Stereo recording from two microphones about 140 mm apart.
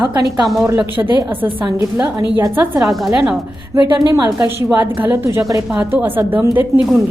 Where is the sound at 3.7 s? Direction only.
25° right (ahead or behind).